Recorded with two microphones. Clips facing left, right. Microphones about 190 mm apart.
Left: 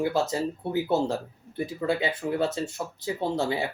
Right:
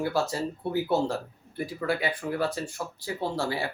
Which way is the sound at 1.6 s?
25° left (ahead or behind).